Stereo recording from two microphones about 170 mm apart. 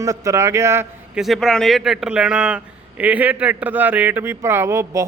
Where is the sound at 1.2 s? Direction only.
Centre (ahead or behind).